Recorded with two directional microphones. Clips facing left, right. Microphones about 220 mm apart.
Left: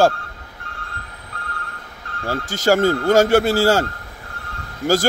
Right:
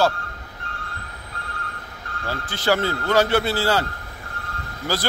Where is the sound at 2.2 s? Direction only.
45° left (ahead or behind).